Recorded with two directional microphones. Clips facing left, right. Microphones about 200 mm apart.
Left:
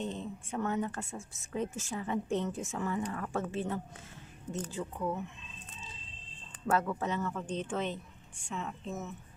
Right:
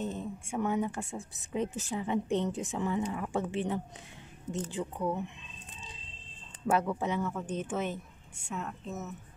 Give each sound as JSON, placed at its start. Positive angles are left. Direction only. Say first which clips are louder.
{"t": 0.0, "sound": "a woman's voice", "louder": "right 2 dB", "side_deg": -5}
{"t": 6.7, "sound": "a woman's voice", "louder": "right 2 dB", "side_deg": -15}